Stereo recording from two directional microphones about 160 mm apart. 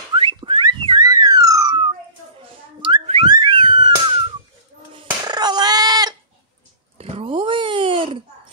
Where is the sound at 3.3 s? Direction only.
30° right (ahead or behind).